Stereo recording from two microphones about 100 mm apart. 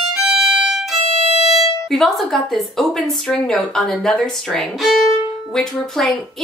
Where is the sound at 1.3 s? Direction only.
90° left.